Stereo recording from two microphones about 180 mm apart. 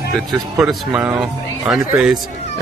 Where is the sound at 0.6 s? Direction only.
5° right (ahead or behind).